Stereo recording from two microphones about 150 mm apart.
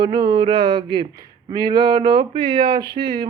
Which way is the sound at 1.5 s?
25° right (ahead or behind).